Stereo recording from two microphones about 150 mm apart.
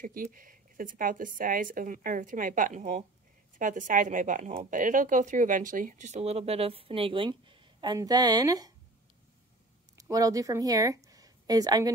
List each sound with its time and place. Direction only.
0.0 s speech: 65° right (ahead or behind); by 8.7 s 25° right (ahead or behind)
9.9 s speech: 25° right (ahead or behind)